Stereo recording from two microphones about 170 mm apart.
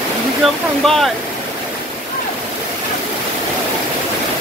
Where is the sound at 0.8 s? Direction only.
Centre (ahead or behind).